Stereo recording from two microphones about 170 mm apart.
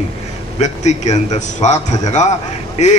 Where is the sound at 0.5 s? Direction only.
45° left (ahead or behind).